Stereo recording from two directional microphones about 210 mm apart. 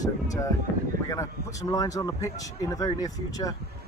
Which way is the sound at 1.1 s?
15° left (ahead or behind).